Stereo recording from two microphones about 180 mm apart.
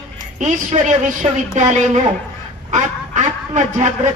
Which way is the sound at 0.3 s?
40° right (ahead or behind).